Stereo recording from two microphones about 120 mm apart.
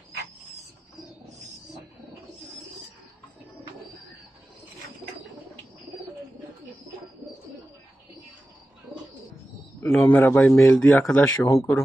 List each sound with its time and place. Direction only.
9.8 s a man's voice: 15° left (ahead or behind)
11.4 s speech: 25° left (ahead or behind)